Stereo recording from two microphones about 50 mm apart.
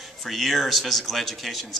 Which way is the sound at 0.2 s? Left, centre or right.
Centre.